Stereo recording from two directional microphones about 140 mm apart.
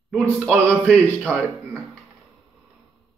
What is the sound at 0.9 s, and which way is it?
Speech, 10° left (ahead or behind).